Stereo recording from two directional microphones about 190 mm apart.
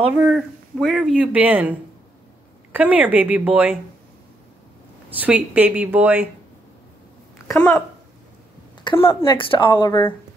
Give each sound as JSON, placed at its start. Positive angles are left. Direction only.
{"t": 0.2, "sound": "a woman's voice", "side_deg": 0}
{"t": 5.2, "sound": "a woman's voice", "side_deg": -10}
{"t": 7.5, "sound": "speech", "side_deg": 5}
{"t": 8.8, "sound": "speech", "side_deg": 25}